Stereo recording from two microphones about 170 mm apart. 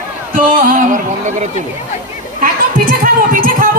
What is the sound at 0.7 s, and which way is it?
Music, 50° right (ahead or behind).